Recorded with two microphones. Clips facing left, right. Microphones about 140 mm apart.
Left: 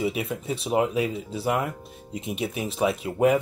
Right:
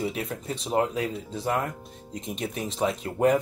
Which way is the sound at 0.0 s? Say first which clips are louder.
Left 3 dB; 5° left (ahead or behind).